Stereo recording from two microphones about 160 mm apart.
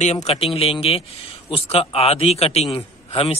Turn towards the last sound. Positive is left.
turn(degrees=40)  # may be behind; listen again after turning